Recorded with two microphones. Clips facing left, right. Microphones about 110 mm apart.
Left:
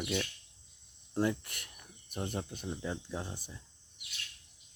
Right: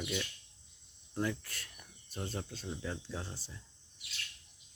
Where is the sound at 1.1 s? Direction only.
25° left (ahead or behind).